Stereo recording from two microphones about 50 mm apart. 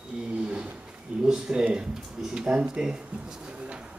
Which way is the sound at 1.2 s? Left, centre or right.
Centre.